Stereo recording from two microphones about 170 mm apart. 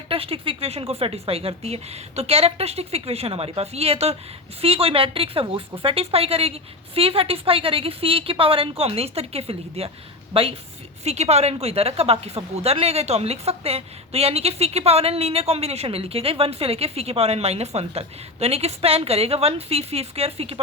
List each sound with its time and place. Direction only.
0.1 s a woman's voice: 35° right (ahead or behind)